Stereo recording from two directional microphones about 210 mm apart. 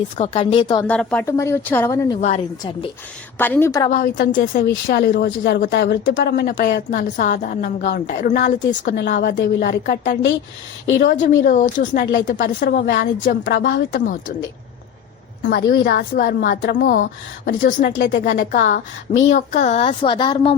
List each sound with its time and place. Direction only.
0.2 s speech: 25° left (ahead or behind)
0.9 s speech: 5° left (ahead or behind)
2.2 s speech: 30° left (ahead or behind)
3.3 s speech: 10° left (ahead or behind)
3.8 s a woman's voice: 40° left (ahead or behind)
8.0 s a woman's voice: 40° left (ahead or behind)
8.9 s a woman's voice: 55° left (ahead or behind)
9.1 s a woman's voice: 35° left (ahead or behind)
9.4 s a woman's voice: 50° left (ahead or behind)
13.4 s a woman's voice: 55° left (ahead or behind)
14.0 s a woman's voice: 40° left (ahead or behind)
15.4 s a woman's voice: 50° left (ahead or behind); by 20.6 s 25° left (ahead or behind)